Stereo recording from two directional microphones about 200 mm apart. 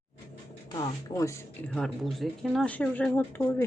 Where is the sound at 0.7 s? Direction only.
20° left (ahead or behind).